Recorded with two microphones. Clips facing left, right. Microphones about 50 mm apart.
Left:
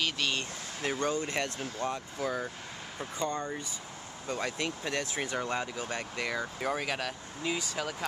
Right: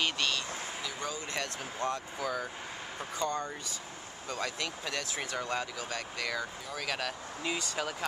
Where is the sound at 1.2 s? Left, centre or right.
Left.